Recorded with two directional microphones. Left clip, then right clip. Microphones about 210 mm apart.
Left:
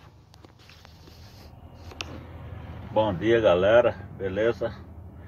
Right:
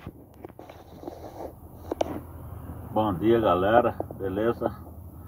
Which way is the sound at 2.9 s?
5° right (ahead or behind).